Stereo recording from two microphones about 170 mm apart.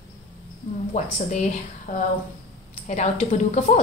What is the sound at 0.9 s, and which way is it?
A woman's voice, 45° left (ahead or behind).